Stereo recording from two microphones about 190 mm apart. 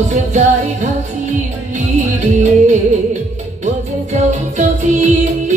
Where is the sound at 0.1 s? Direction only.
40° right (ahead or behind).